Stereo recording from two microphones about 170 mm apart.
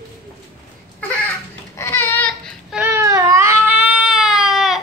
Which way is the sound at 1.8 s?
15° left (ahead or behind).